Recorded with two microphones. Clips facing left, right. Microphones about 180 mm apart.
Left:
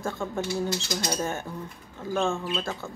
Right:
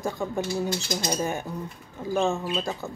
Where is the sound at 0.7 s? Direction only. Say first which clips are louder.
Right 1 dB; 25° right (ahead or behind).